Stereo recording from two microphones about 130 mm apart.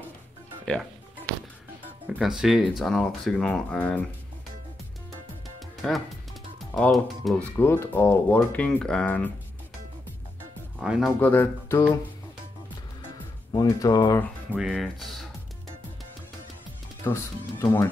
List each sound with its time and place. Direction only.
2.1 s speech: 5° right (ahead or behind)
5.8 s speech: centre (ahead or behind)
7.5 s speech: 15° left (ahead or behind)
10.8 s speech: 5° right (ahead or behind)
11.1 s speech: 15° left (ahead or behind)
13.5 s speech: 30° left (ahead or behind)
14.6 s speech: centre (ahead or behind)
17.0 s speech: 20° left (ahead or behind)